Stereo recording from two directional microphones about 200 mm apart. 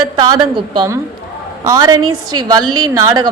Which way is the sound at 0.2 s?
20° right (ahead or behind).